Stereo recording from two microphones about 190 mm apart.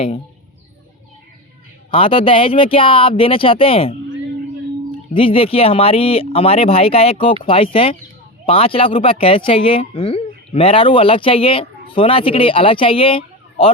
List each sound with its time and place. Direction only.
1.9 s speech: 30° left (ahead or behind)
5.1 s speech: 30° left (ahead or behind)